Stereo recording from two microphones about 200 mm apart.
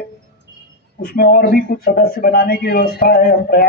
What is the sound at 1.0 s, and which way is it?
Speech, 50° left (ahead or behind).